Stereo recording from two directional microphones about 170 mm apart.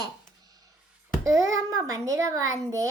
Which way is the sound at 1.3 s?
20° right (ahead or behind).